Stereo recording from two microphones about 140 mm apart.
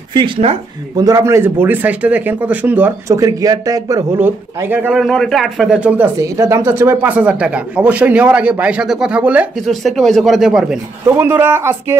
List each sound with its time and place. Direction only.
0.1 s speech: 40° right (ahead or behind)
0.9 s speech: 25° right (ahead or behind)
3.1 s speech: 25° right (ahead or behind)
4.9 s speech: centre (ahead or behind)
6.1 s speech: 25° right (ahead or behind)
9.6 s speech: centre (ahead or behind)
11.1 s speech: 15° right (ahead or behind)